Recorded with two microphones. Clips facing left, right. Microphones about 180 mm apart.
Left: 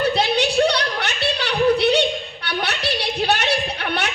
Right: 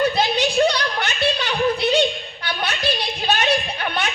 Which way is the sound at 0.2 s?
70° left (ahead or behind).